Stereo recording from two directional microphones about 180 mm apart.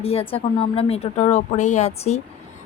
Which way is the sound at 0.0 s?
35° left (ahead or behind).